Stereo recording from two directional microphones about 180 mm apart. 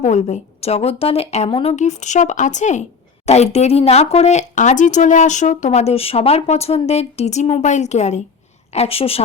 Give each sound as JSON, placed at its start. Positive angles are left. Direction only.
{"t": 0.0, "sound": "speech", "side_deg": 40}